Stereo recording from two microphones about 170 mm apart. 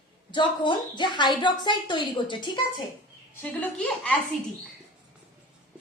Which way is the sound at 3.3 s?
10° left (ahead or behind).